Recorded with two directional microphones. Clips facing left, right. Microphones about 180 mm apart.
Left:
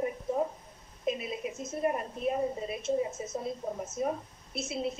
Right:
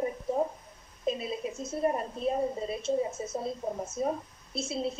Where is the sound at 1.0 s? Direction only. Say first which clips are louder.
Right 1 dB; 30° right (ahead or behind).